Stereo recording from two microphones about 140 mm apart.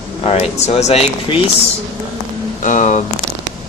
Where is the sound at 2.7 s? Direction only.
60° left (ahead or behind).